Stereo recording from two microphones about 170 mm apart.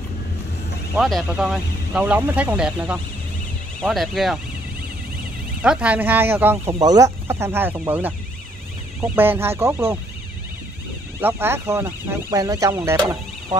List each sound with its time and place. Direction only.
0.9 s speech: centre (ahead or behind)
5.6 s speech: 5° right (ahead or behind)
6.7 s speech: 20° right (ahead or behind)
11.1 s speech: 10° right (ahead or behind)